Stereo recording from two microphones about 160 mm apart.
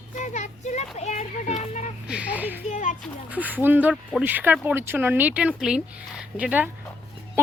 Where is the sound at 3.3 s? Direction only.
10° right (ahead or behind).